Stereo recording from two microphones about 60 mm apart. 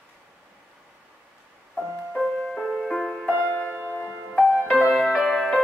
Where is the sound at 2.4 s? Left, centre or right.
Centre.